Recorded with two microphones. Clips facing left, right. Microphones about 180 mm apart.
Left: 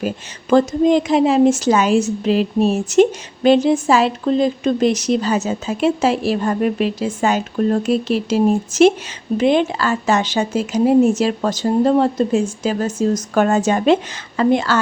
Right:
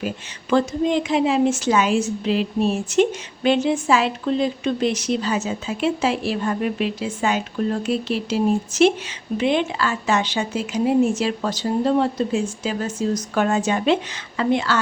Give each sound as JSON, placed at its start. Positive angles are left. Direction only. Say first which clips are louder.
{"t": 0.5, "sound": "a woman's voice", "louder": "left 6 dB", "side_deg": 40}